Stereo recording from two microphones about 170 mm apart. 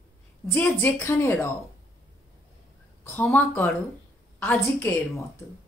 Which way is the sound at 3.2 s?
10° left (ahead or behind).